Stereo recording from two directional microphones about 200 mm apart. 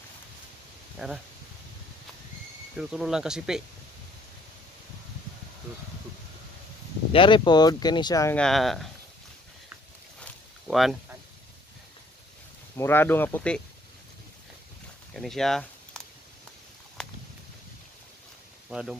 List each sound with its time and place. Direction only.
0.9 s speech: centre (ahead or behind)
2.8 s speech: 5° right (ahead or behind)
7.1 s speech: 25° left (ahead or behind)
8.4 s speech: centre (ahead or behind)
10.2 s a sound: centre (ahead or behind)
12.7 s speech: 10° left (ahead or behind)
15.1 s a sound: centre (ahead or behind)
17.0 s a sound: 5° left (ahead or behind)
18.7 s speech: 5° right (ahead or behind)